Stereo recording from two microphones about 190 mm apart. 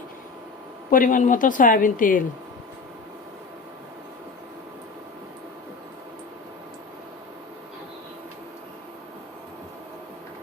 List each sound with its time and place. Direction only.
0.9 s a woman's voice: 45° left (ahead or behind)